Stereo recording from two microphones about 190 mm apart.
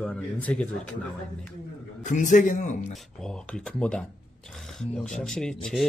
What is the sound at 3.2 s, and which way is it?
Speech, 5° left (ahead or behind).